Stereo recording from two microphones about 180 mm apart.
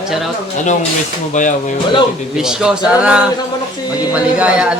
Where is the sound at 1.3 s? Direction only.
45° left (ahead or behind).